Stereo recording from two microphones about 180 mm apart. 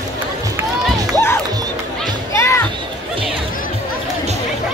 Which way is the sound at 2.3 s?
15° left (ahead or behind).